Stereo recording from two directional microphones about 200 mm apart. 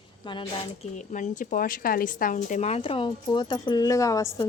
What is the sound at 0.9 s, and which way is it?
Speech, 40° left (ahead or behind).